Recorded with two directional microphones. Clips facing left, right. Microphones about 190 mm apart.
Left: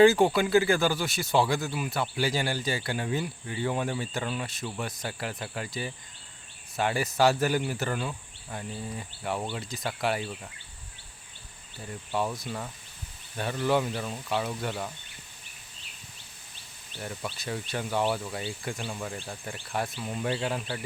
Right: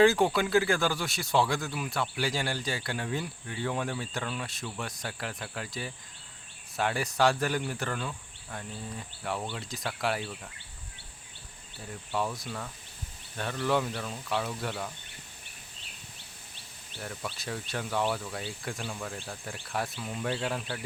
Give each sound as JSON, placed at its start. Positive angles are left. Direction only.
{"t": 0.0, "sound": "speech", "side_deg": 0}
{"t": 11.9, "sound": "speech", "side_deg": 0}
{"t": 17.0, "sound": "speech", "side_deg": 0}